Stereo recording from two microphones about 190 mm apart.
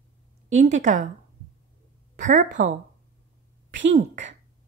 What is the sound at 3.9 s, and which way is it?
Speech, 40° right (ahead or behind).